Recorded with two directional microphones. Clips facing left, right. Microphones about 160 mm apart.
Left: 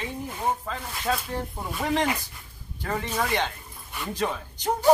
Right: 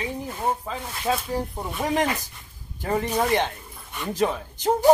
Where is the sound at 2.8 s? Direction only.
15° right (ahead or behind).